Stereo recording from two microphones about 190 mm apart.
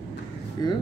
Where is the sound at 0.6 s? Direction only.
20° left (ahead or behind).